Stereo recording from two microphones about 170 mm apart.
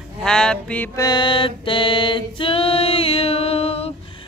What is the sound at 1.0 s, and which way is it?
Music, 25° left (ahead or behind).